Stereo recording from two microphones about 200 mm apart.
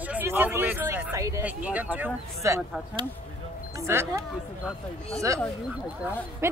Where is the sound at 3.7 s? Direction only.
15° right (ahead or behind).